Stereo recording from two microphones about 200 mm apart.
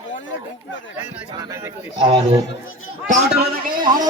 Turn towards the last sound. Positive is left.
turn(degrees=-45)  # may be behind; listen again after turning